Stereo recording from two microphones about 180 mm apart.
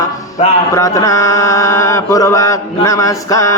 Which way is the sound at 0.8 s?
20° left (ahead or behind).